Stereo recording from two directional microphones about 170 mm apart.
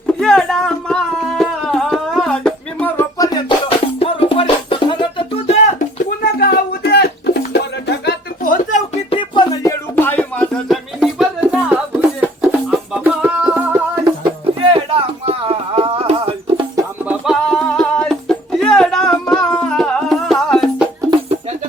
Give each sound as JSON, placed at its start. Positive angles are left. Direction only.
{"t": 0.2, "sound": "music", "side_deg": 5}
{"t": 6.2, "sound": "music", "side_deg": 70}
{"t": 9.0, "sound": "music", "side_deg": 30}
{"t": 9.9, "sound": "music", "side_deg": 10}
{"t": 14.7, "sound": "music", "side_deg": -35}
{"t": 17.1, "sound": "music", "side_deg": 0}